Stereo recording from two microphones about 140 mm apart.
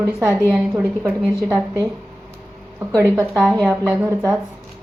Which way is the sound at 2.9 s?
20° right (ahead or behind).